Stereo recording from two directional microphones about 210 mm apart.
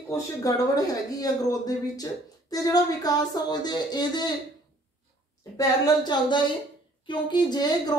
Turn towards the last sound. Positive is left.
turn(degrees=20)  # may be behind; listen again after turning